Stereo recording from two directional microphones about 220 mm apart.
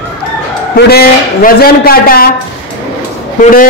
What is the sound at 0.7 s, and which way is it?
A man's voice, 45° left (ahead or behind).